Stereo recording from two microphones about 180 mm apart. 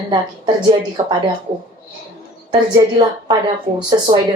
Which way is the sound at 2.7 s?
25° right (ahead or behind).